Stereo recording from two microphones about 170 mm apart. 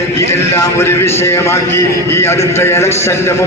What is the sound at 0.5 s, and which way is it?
A man's voice, 15° left (ahead or behind).